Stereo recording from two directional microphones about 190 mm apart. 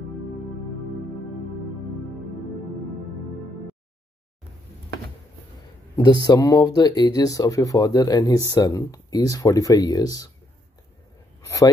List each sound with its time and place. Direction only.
5.9 s speech: 20° left (ahead or behind)
11.4 s a man's voice: 15° left (ahead or behind)